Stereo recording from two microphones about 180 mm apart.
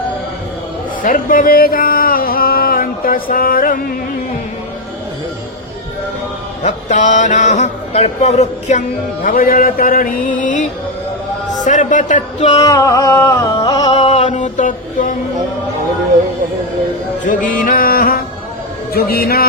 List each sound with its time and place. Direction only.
1.0 s a sound: 50° left (ahead or behind)
6.6 s speech: 40° left (ahead or behind)
9.2 s music: 50° left (ahead or behind)
12.5 s music: 20° left (ahead or behind)
14.1 s mantra: 40° left (ahead or behind)
17.2 s music: 50° left (ahead or behind)
18.9 s a man's voice: 55° left (ahead or behind)